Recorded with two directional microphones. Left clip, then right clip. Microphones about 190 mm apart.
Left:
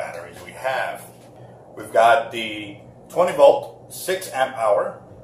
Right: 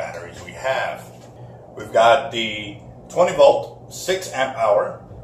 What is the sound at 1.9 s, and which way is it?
Speech, centre (ahead or behind).